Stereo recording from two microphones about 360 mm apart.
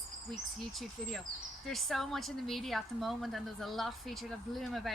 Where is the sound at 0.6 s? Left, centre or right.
Centre.